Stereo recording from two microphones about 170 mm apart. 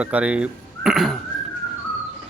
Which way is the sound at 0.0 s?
5° right (ahead or behind).